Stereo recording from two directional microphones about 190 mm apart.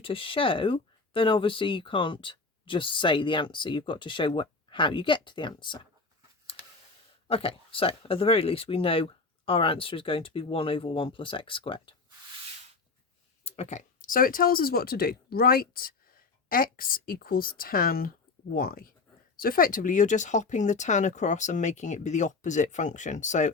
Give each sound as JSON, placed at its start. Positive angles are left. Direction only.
{"t": 0.0, "sound": "speech", "side_deg": 30}
{"t": 7.3, "sound": "speech", "side_deg": 30}
{"t": 13.4, "sound": "speech", "side_deg": 35}